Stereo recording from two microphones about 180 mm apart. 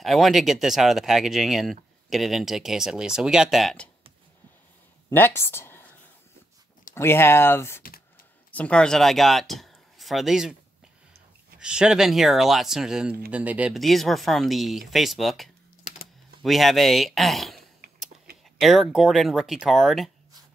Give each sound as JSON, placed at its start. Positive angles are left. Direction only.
{"t": 0.0, "sound": "speech", "side_deg": 0}
{"t": 5.1, "sound": "speech", "side_deg": 15}
{"t": 7.0, "sound": "speech", "side_deg": 15}
{"t": 11.6, "sound": "speech", "side_deg": -5}